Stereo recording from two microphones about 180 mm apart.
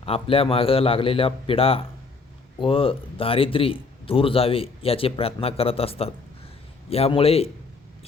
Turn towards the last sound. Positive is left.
turn(degrees=35)  # may be behind; listen again after turning